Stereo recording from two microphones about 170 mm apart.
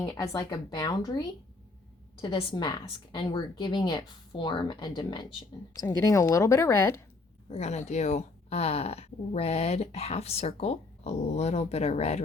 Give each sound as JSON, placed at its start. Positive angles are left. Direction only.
{"t": 0.2, "sound": "speech", "side_deg": 25}
{"t": 2.2, "sound": "speech", "side_deg": 30}
{"t": 7.5, "sound": "speech", "side_deg": 40}